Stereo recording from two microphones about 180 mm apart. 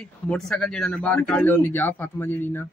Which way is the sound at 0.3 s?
5° left (ahead or behind).